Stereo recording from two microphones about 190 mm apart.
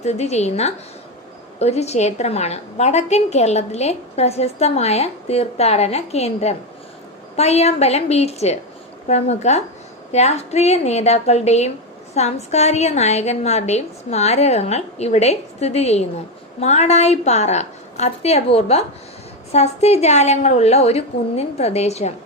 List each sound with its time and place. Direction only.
0.0 s a woman's voice: 35° left (ahead or behind)